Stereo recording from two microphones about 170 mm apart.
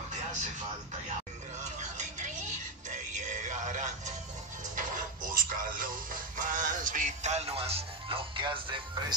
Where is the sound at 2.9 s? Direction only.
45° right (ahead or behind).